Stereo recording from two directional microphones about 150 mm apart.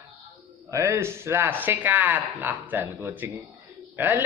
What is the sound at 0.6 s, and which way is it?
Speech, 20° right (ahead or behind).